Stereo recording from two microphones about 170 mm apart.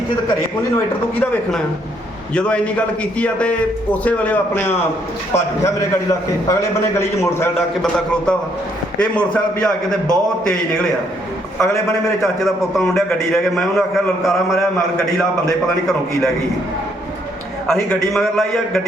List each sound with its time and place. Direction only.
1.2 s a man's voice: 5° left (ahead or behind); by 6.7 s 20° left (ahead or behind)
7.8 s a man's voice: 5° left (ahead or behind)
12.2 s a man's voice: centre (ahead or behind)
17.7 s a man's voice: centre (ahead or behind)